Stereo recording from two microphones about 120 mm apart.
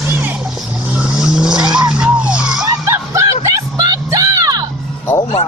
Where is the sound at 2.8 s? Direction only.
25° right (ahead or behind).